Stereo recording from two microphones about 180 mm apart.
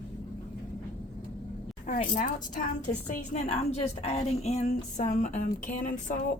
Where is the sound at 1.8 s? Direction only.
45° left (ahead or behind).